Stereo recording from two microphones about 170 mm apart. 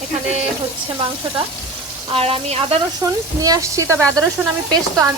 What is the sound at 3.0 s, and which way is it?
Speech, 20° right (ahead or behind).